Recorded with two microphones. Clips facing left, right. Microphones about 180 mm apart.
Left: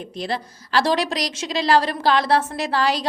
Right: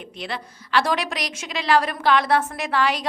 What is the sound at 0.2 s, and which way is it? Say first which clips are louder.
A woman's voice: left 5 dB; 35° left (ahead or behind).